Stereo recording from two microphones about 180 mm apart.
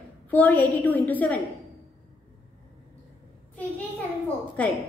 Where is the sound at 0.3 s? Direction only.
10° left (ahead or behind).